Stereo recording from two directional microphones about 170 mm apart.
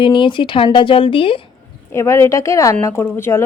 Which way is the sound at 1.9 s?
15° left (ahead or behind).